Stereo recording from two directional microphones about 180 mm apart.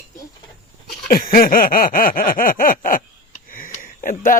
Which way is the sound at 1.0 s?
50° left (ahead or behind).